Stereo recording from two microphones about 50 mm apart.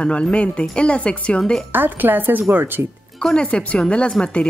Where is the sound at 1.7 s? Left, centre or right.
Right.